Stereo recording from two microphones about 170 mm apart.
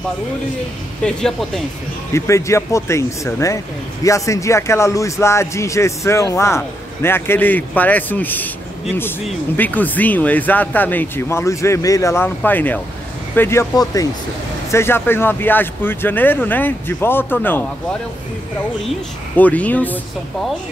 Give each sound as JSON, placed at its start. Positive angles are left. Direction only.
{"t": 1.0, "sound": "speech", "side_deg": 0}
{"t": 2.1, "sound": "speech", "side_deg": 15}
{"t": 9.6, "sound": "speech", "side_deg": 10}
{"t": 18.9, "sound": "speech", "side_deg": 10}